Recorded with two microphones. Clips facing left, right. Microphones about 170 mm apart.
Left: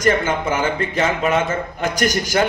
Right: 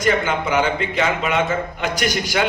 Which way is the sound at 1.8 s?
45° left (ahead or behind).